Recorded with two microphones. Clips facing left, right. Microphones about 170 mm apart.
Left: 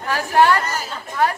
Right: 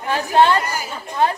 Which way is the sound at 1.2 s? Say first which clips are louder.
Right 1 dB; 20° right (ahead or behind).